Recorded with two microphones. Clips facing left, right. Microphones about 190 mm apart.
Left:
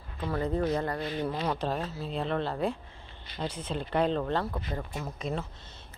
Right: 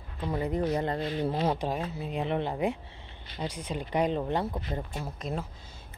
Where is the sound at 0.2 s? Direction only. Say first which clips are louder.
Even; 15° right (ahead or behind).